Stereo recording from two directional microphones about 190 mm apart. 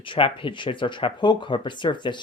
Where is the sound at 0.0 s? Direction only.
25° left (ahead or behind).